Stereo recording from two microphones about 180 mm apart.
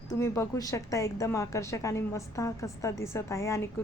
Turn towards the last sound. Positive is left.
turn(degrees=15)  # may be behind; listen again after turning